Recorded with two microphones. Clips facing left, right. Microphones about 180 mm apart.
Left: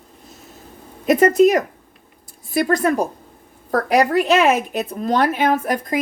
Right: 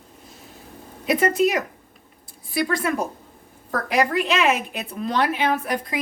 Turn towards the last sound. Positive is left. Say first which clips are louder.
# left 5 dB
turn(degrees=45)  # may be behind; listen again after turning